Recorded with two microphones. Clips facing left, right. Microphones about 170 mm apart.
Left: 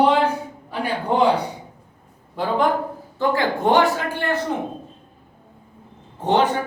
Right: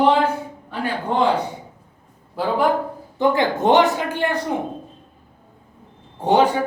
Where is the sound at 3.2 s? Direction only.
20° right (ahead or behind).